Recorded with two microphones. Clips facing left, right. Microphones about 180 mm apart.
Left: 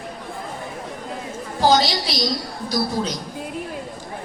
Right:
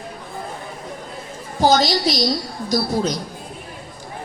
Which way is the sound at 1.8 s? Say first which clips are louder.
Right 4 dB; 45° right (ahead or behind).